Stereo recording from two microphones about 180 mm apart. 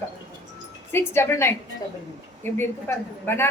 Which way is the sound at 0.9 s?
15° left (ahead or behind).